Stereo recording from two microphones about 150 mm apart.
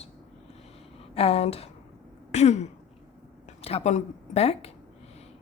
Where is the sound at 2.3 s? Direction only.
50° left (ahead or behind).